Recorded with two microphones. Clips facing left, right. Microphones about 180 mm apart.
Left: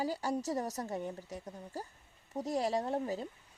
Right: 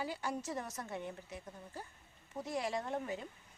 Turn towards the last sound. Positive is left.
turn(degrees=35)  # may be behind; listen again after turning